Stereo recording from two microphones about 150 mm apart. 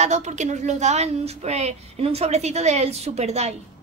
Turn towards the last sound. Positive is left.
turn(degrees=-45)  # may be behind; listen again after turning